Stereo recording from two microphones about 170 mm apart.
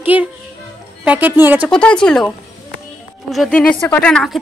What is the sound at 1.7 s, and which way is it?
Speech, 5° left (ahead or behind).